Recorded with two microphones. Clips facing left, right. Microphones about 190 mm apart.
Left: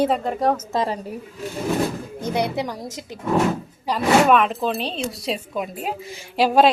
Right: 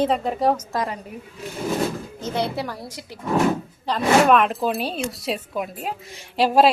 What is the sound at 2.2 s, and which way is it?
Speech, 15° left (ahead or behind).